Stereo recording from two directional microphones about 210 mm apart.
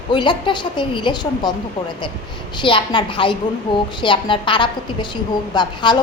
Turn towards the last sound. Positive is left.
turn(degrees=20)  # may be behind; listen again after turning